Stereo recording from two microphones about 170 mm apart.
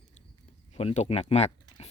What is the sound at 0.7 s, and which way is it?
Speech, 40° left (ahead or behind).